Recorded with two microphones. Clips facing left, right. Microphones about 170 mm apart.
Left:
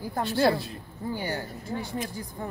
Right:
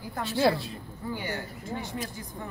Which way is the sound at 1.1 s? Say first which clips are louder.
Left 2 dB; 35° left (ahead or behind).